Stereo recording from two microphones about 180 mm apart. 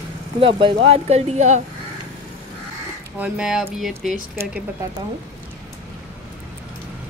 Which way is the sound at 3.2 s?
5° right (ahead or behind).